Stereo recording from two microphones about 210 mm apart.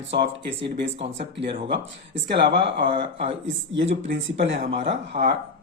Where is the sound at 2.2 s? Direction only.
55° right (ahead or behind).